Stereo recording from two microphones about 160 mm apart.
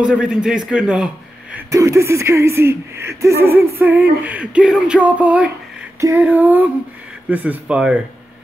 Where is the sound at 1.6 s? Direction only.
20° right (ahead or behind).